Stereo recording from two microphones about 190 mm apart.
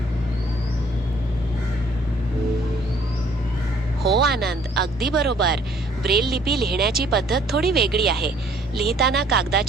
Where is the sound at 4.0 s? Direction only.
55° right (ahead or behind).